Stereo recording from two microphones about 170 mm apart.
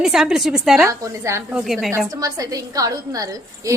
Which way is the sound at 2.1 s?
20° right (ahead or behind).